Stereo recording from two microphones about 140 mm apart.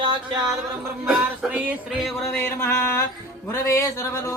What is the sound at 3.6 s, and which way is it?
Speech, 20° left (ahead or behind).